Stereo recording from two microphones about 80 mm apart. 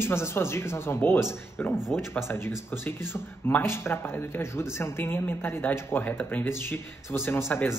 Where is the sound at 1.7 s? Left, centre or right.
Centre.